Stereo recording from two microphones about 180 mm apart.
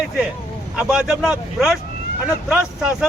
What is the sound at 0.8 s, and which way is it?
Speech, 5° right (ahead or behind).